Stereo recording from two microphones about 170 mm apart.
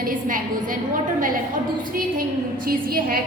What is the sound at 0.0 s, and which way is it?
Speech, 55° right (ahead or behind).